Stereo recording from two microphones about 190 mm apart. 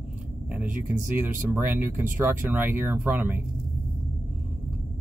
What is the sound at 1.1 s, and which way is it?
Speech, 10° right (ahead or behind).